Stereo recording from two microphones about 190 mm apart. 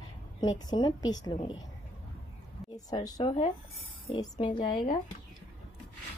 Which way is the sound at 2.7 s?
20° left (ahead or behind).